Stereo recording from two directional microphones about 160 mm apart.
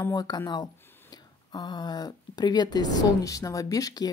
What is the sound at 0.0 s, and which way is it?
Speech, 25° left (ahead or behind).